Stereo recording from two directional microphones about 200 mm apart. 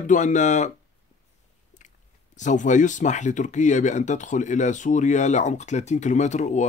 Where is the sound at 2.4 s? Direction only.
40° left (ahead or behind).